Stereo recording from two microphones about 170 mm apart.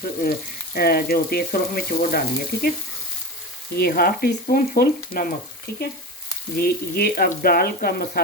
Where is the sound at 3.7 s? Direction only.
65° left (ahead or behind).